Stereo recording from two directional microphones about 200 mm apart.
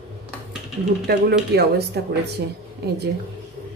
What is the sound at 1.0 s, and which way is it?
A woman's voice, 55° right (ahead or behind).